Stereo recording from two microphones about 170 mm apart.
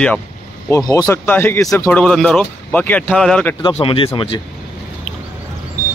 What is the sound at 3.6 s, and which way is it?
Speech, 30° left (ahead or behind).